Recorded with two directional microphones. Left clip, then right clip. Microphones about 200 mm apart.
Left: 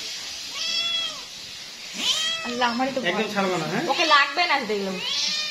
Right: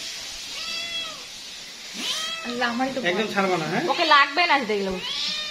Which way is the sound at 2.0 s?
10° left (ahead or behind).